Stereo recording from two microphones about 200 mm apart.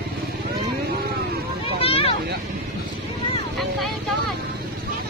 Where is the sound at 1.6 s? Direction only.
30° left (ahead or behind).